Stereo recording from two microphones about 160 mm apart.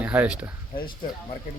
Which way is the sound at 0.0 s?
10° right (ahead or behind).